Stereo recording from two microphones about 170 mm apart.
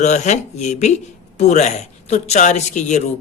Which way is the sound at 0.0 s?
45° left (ahead or behind).